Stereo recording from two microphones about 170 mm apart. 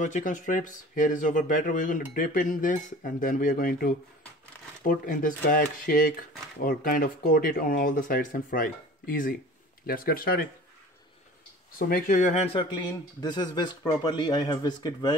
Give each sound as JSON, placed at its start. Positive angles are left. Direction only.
{"t": 0.0, "sound": "speech", "side_deg": 50}
{"t": 11.9, "sound": "speech", "side_deg": 50}
{"t": 12.5, "sound": "speech", "side_deg": 25}